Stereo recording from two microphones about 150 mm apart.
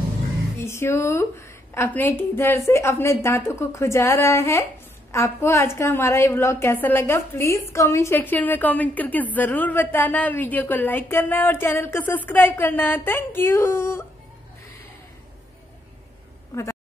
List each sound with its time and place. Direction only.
0.6 s a woman's voice: 15° left (ahead or behind)